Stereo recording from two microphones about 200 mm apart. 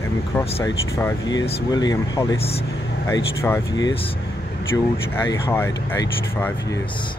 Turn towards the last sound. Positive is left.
turn(degrees=10)  # may be behind; listen again after turning